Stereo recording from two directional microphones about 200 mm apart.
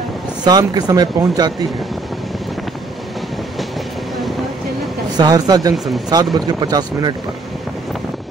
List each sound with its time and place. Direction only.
0.4 s speech: 20° right (ahead or behind)
5.1 s speech: 20° right (ahead or behind)